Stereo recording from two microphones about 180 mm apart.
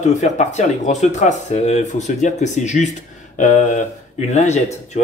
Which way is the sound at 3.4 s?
45° left (ahead or behind).